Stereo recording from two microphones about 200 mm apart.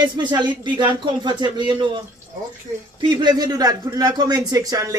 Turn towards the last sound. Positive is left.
turn(degrees=-15)  # may be behind; listen again after turning